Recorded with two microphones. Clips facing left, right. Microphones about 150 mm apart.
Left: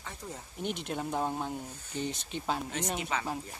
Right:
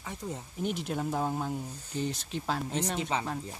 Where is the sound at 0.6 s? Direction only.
Centre (ahead or behind).